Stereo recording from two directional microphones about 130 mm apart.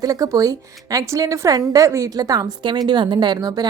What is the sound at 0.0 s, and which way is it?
A woman's voice, 30° right (ahead or behind).